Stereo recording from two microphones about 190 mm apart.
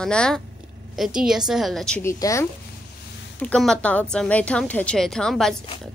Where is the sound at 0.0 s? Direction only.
5° left (ahead or behind).